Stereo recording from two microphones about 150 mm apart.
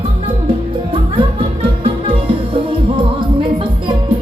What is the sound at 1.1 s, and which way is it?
Music, 35° right (ahead or behind).